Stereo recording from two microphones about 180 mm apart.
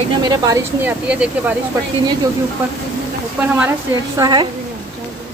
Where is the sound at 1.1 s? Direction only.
5° right (ahead or behind).